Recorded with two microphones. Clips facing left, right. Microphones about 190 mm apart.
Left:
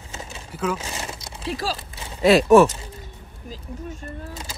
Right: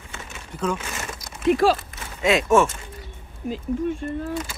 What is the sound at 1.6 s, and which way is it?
Speech, 50° right (ahead or behind).